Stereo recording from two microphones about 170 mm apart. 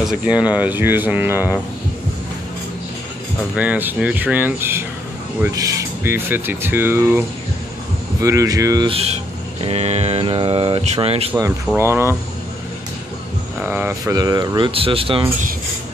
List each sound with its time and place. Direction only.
0.0 s speech: 5° right (ahead or behind)
3.5 s speech: 10° right (ahead or behind)
8.8 s speech: 35° right (ahead or behind)
11.3 s speech: 15° right (ahead or behind)
13.6 s speech: 10° right (ahead or behind); by 15.2 s 30° right (ahead or behind)